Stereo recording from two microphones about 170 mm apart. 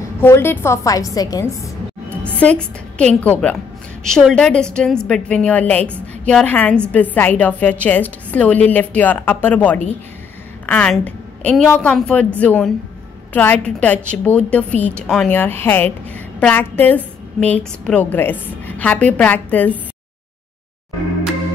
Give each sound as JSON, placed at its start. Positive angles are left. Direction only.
{"t": 0.2, "sound": "a woman's voice", "side_deg": 15}
{"t": 2.0, "sound": "a woman's voice", "side_deg": 10}